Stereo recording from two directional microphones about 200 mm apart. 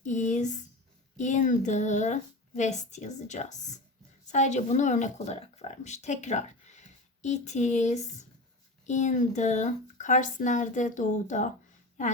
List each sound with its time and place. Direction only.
0.0 s speech: 40° left (ahead or behind)